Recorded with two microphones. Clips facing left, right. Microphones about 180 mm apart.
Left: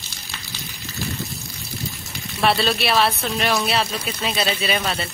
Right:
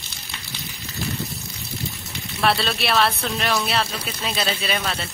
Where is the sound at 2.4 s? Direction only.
Centre (ahead or behind).